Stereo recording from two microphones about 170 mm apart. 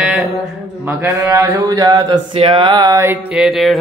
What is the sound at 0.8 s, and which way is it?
Speech, 15° right (ahead or behind).